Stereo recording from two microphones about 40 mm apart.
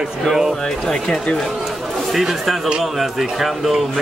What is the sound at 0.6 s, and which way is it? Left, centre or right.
Speech, centre.